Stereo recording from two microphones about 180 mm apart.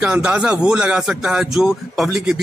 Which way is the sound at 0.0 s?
10° right (ahead or behind).